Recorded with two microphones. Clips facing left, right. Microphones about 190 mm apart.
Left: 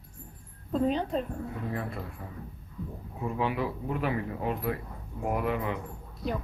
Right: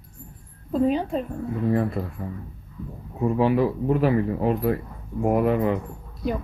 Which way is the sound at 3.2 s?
35° right (ahead or behind).